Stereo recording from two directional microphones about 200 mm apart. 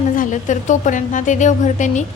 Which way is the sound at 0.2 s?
40° left (ahead or behind).